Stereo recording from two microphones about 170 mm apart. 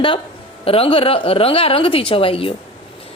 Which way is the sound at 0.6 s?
35° left (ahead or behind).